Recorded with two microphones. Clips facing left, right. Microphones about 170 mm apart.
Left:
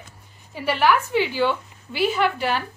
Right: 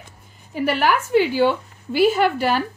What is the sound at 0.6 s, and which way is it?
A woman's voice, 45° right (ahead or behind).